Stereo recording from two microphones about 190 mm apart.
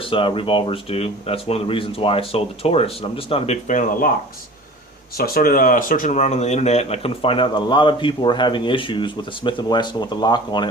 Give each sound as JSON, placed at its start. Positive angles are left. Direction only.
{"t": 0.0, "sound": "speech", "side_deg": 30}
{"t": 5.1, "sound": "speech", "side_deg": 50}